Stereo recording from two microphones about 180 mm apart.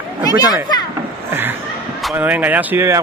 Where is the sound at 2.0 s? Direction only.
5° right (ahead or behind).